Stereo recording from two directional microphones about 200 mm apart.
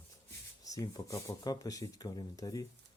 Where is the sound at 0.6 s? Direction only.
15° left (ahead or behind).